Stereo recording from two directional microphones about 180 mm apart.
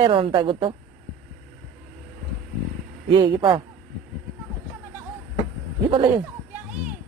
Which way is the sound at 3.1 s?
25° right (ahead or behind).